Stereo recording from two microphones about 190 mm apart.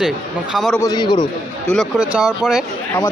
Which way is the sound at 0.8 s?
20° left (ahead or behind).